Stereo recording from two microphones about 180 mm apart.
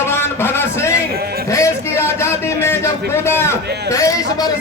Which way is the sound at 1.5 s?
15° left (ahead or behind).